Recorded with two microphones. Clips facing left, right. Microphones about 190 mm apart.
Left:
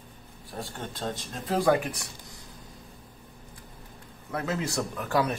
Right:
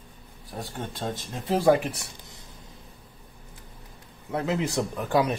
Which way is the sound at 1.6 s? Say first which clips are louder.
Right 3 dB; 25° right (ahead or behind).